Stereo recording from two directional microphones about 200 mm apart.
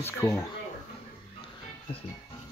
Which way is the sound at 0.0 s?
15° left (ahead or behind).